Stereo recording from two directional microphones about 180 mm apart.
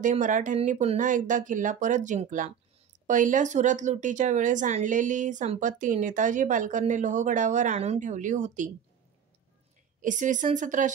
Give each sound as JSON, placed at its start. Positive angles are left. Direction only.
{"t": 0.0, "sound": "speech", "side_deg": -45}
{"t": 10.0, "sound": "speech", "side_deg": -45}